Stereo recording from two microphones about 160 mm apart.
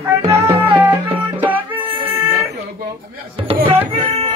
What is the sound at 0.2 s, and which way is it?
Music, 15° right (ahead or behind).